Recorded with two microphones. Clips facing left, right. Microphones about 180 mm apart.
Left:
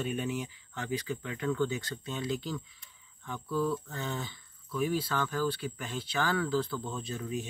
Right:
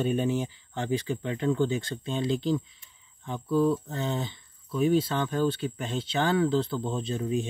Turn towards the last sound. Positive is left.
turn(degrees=-25)  # may be behind; listen again after turning